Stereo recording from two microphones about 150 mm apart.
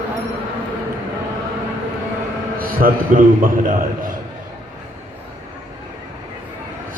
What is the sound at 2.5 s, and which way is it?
A man's voice, 70° right (ahead or behind).